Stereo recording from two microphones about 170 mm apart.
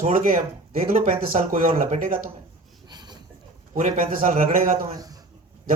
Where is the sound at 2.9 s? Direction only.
25° right (ahead or behind).